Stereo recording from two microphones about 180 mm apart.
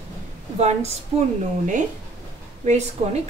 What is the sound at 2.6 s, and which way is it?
Speech, 40° right (ahead or behind).